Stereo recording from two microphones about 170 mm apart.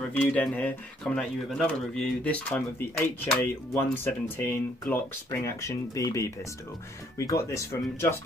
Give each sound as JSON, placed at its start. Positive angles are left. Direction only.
{"t": 0.0, "sound": "speech", "side_deg": 10}
{"t": 3.7, "sound": "speech", "side_deg": 15}